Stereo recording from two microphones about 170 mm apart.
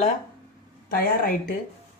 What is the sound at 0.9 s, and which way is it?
Speech, 60° left (ahead or behind).